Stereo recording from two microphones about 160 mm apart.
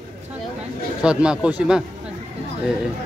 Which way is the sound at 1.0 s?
5° right (ahead or behind).